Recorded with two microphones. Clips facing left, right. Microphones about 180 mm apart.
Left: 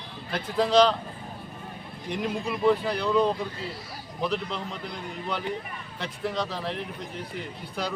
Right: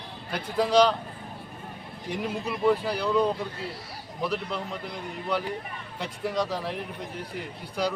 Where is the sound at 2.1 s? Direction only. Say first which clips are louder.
Left 1 dB; 5° right (ahead or behind).